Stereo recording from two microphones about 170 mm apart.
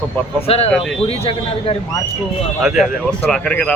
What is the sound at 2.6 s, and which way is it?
A man's voice, centre (ahead or behind).